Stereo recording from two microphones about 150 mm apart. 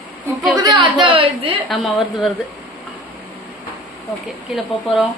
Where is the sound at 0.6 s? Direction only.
30° right (ahead or behind).